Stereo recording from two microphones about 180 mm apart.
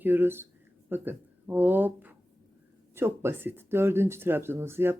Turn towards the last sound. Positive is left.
turn(degrees=-15)  # may be behind; listen again after turning